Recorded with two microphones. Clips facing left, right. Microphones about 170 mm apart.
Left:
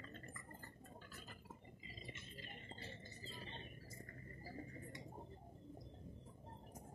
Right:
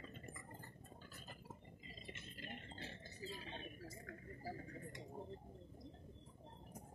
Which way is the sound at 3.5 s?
90° right.